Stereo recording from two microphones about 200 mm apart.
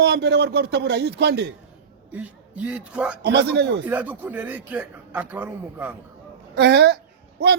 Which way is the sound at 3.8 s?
10° right (ahead or behind).